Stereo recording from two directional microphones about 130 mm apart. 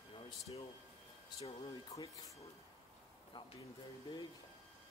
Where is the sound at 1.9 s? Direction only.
25° left (ahead or behind).